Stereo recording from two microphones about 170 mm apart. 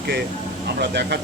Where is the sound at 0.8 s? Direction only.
85° right.